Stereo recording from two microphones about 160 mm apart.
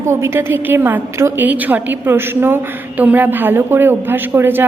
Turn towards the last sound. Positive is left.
turn(degrees=-15)  # may be behind; listen again after turning